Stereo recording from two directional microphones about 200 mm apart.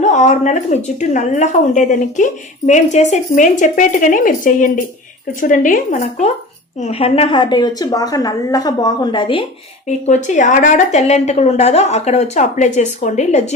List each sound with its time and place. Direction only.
0.0 s a woman's voice: 35° left (ahead or behind)
10.1 s a woman's voice: 35° left (ahead or behind)